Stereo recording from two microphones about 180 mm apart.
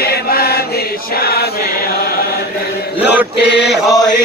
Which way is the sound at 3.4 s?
70° left (ahead or behind).